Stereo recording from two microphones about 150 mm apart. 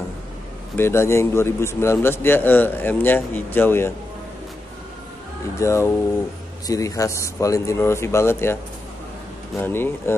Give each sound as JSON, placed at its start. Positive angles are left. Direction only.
{"t": 0.7, "sound": "a man's voice", "side_deg": 15}
{"t": 5.6, "sound": "speech", "side_deg": 20}
{"t": 9.6, "sound": "a man's voice", "side_deg": 15}